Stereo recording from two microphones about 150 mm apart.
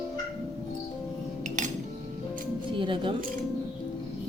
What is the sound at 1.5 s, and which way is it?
Music, 55° right (ahead or behind).